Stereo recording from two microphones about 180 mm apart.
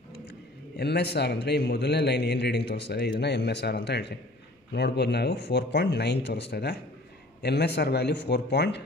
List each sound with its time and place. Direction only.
0.1 s a man's voice: 65° left (ahead or behind)